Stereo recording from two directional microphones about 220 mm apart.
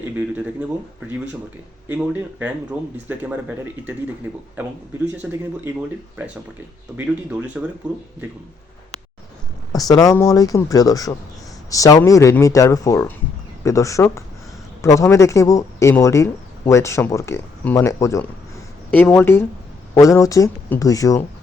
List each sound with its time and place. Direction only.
1.9 s speech: 10° right (ahead or behind)
5.2 s speech: 5° right (ahead or behind)
6.9 s speech: 5° right (ahead or behind)
9.7 s speech: 15° left (ahead or behind)